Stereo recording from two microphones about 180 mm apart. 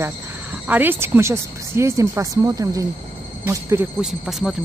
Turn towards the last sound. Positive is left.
turn(degrees=0)  # may be behind; listen again after turning